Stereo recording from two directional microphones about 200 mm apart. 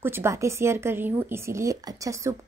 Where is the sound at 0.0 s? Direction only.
10° right (ahead or behind).